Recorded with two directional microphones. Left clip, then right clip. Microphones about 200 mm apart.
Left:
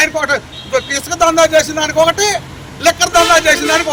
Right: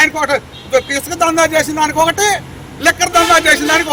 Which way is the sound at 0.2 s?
15° right (ahead or behind).